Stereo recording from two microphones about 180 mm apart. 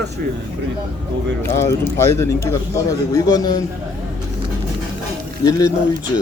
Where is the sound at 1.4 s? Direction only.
15° left (ahead or behind).